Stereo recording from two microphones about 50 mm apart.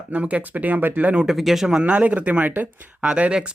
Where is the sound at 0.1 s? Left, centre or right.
Right.